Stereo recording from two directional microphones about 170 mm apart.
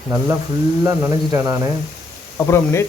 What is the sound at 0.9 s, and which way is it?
Speech, 20° right (ahead or behind).